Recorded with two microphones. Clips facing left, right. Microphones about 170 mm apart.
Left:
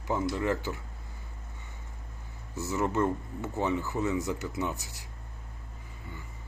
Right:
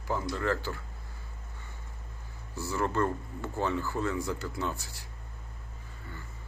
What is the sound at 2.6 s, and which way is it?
Speech, 20° left (ahead or behind).